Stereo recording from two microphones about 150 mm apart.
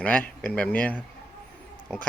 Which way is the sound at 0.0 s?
10° left (ahead or behind).